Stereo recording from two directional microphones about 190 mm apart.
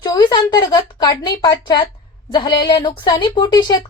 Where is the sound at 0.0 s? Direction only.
20° left (ahead or behind).